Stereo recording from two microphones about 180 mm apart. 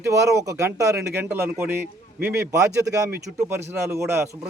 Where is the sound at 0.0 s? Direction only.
15° right (ahead or behind).